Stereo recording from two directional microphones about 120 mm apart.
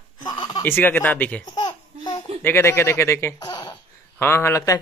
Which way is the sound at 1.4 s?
35° left (ahead or behind).